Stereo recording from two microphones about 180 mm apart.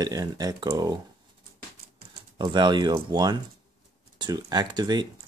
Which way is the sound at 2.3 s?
25° right (ahead or behind).